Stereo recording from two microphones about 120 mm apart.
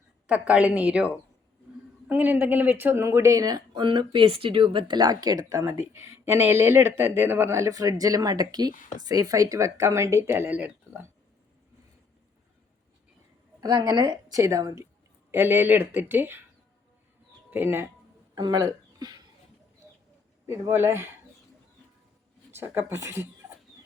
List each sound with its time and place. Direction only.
0.3 s speech: 10° right (ahead or behind); by 3.8 s 30° right (ahead or behind)
3.8 s speech: 45° right (ahead or behind); by 11.1 s 15° right (ahead or behind)
13.6 s a woman's voice: 30° right (ahead or behind)
15.3 s speech: 15° right (ahead or behind)
17.5 s speech: 15° right (ahead or behind)
18.3 s a sound: 35° right (ahead or behind)
20.5 s speech: 20° right (ahead or behind)
22.5 s speech: 20° right (ahead or behind)